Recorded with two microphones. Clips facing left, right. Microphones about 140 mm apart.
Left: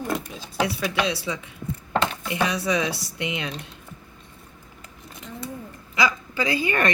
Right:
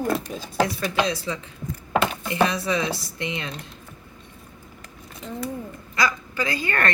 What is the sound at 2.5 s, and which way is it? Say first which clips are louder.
Speech: even; 15° left (ahead or behind).